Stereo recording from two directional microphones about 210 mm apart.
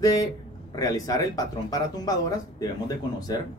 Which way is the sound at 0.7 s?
15° left (ahead or behind).